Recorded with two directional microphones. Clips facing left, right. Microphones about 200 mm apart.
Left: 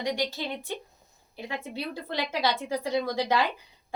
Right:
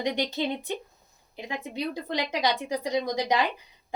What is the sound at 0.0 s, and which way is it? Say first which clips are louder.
A woman's voice: right 2 dB; 20° right (ahead or behind).